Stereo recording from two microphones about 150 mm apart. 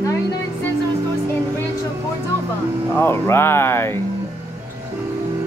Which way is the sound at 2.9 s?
15° left (ahead or behind).